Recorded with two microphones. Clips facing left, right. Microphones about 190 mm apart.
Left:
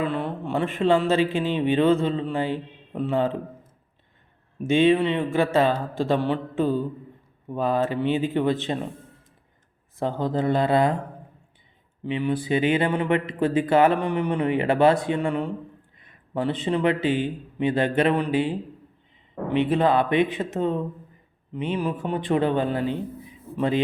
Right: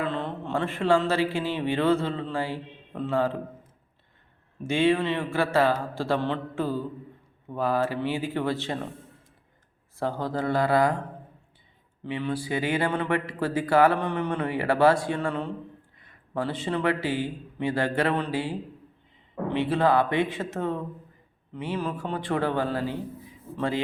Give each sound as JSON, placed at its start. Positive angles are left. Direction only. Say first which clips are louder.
{"t": 0.0, "sound": "speech", "louder": "left 3 dB", "side_deg": 10}
{"t": 4.6, "sound": "speech", "louder": "left 4 dB", "side_deg": 20}
{"t": 10.0, "sound": "speech", "louder": "left 4 dB", "side_deg": 20}
{"t": 12.0, "sound": "speech", "louder": "left 5 dB", "side_deg": 20}